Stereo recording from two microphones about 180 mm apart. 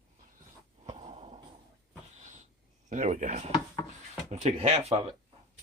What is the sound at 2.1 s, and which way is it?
Wheeze, 40° right (ahead or behind).